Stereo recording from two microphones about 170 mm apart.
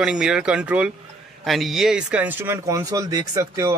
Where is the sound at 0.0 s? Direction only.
5° right (ahead or behind).